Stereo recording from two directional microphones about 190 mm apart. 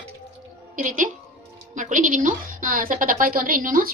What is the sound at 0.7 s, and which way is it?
A woman's voice, 45° right (ahead or behind).